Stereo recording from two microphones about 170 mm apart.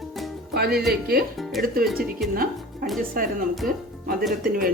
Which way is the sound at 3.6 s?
Centre (ahead or behind).